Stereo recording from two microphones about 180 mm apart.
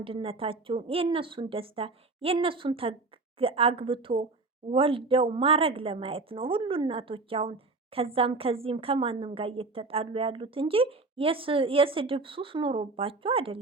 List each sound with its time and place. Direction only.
0.0 s a woman's voice: 30° right (ahead or behind)